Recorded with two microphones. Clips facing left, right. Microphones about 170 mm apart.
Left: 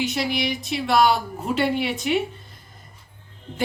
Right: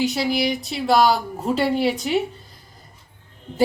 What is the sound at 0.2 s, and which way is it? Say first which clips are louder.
A woman's voice: right 3 dB; 35° right (ahead or behind).